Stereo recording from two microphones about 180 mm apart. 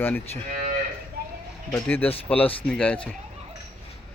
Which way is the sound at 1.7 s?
10° left (ahead or behind).